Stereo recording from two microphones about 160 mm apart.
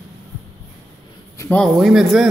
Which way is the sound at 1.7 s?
Centre (ahead or behind).